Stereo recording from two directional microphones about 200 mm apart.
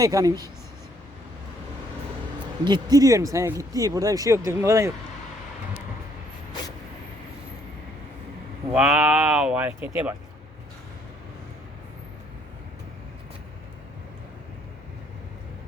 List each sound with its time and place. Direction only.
0.0 s speech: 15° right (ahead or behind)
2.6 s speech: 20° right (ahead or behind)
8.7 s speech: 5° right (ahead or behind)